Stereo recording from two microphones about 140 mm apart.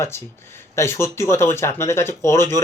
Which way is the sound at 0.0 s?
20° left (ahead or behind).